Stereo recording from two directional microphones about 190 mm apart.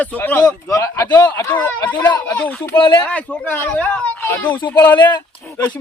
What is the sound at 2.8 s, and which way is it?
Speech, 25° left (ahead or behind).